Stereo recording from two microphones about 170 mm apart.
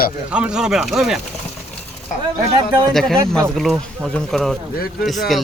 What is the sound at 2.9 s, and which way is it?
Speech, centre (ahead or behind).